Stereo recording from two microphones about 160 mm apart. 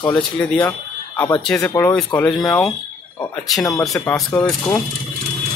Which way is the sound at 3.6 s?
20° left (ahead or behind).